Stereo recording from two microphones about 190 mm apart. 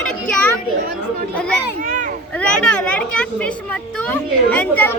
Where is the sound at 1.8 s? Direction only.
40° right (ahead or behind).